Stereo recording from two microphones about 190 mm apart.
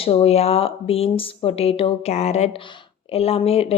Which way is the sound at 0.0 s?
30° left (ahead or behind).